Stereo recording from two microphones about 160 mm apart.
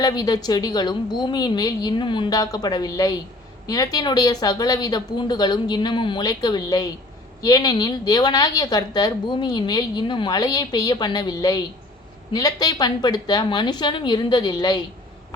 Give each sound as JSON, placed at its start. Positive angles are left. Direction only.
{"t": 0.0, "sound": "a woman's voice", "side_deg": 25}